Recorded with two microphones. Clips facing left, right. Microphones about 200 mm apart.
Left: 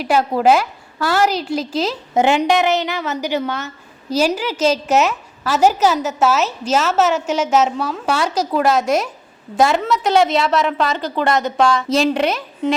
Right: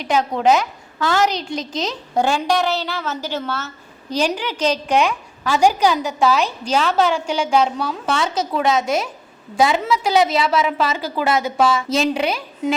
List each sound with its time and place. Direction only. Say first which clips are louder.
0.0 s a woman's voice: left 2 dB; 5° left (ahead or behind)
2.1 s a woman's voice: left 3 dB; 20° left (ahead or behind)
8.8 s a woman's voice: left 3 dB; 5° right (ahead or behind)